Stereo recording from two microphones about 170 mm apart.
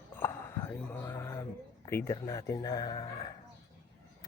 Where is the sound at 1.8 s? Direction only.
15° left (ahead or behind).